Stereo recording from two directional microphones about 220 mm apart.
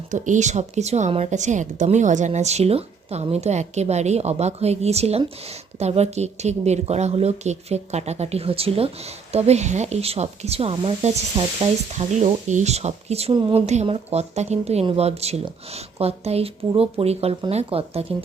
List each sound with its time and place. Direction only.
0.1 s a woman's voice: 35° right (ahead or behind)